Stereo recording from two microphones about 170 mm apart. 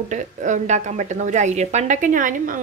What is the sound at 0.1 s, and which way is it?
A woman's voice, 45° right (ahead or behind).